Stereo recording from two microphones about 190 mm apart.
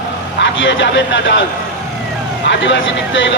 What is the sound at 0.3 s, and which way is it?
Speech, 75° left (ahead or behind).